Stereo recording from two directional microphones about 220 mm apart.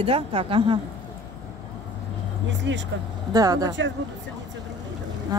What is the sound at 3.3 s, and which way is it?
Speech, 15° right (ahead or behind).